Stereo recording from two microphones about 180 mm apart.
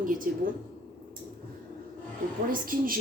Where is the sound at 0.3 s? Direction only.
50° right (ahead or behind).